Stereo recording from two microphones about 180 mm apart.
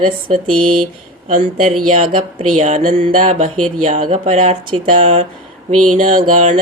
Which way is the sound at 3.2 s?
40° right (ahead or behind).